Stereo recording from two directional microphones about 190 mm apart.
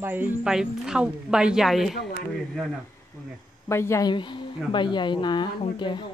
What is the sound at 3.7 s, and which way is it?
A woman's voice, 15° left (ahead or behind).